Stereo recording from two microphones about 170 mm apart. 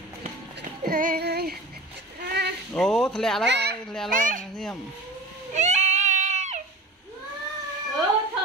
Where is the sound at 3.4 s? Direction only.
85° right.